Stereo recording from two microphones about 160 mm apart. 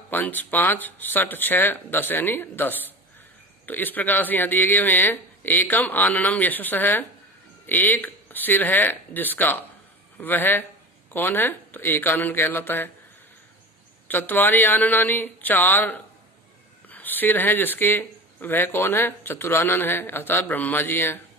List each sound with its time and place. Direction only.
0.1 s a man's voice: 10° left (ahead or behind)
14.0 s speech: 10° left (ahead or behind)